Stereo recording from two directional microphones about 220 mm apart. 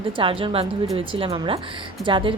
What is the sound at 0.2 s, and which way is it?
A woman's voice, 25° right (ahead or behind).